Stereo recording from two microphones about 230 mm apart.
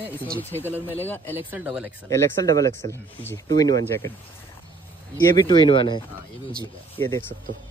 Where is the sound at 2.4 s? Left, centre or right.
Centre.